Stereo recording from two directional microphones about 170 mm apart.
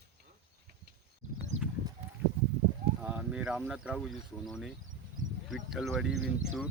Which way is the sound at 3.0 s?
10° right (ahead or behind).